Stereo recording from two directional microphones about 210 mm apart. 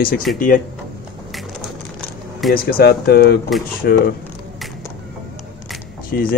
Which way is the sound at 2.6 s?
45° left (ahead or behind).